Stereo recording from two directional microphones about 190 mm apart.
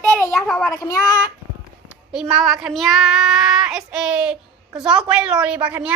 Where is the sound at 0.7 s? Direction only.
20° left (ahead or behind).